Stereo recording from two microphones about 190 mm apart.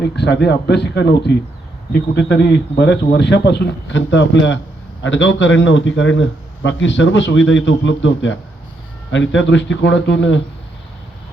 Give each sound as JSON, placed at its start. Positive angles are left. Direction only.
{"t": 0.0, "sound": "a man's voice", "side_deg": 65}